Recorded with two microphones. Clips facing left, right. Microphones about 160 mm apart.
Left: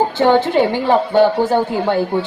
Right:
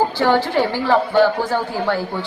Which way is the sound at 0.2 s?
20° left (ahead or behind).